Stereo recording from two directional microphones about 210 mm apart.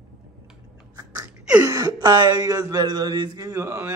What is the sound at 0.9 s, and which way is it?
Gasp, 20° right (ahead or behind).